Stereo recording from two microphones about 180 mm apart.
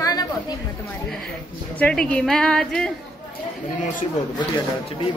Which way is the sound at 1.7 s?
5° left (ahead or behind).